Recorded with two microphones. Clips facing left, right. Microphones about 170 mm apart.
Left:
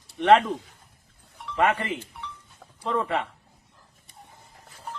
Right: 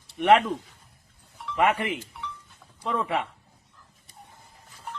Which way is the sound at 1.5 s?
15° right (ahead or behind).